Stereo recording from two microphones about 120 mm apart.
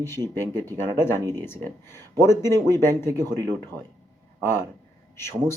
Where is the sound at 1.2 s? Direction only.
35° right (ahead or behind).